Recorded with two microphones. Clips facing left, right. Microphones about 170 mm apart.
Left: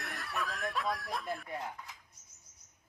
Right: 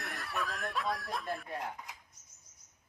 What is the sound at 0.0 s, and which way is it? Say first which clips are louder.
Chicken: right 1 dB; centre (ahead or behind).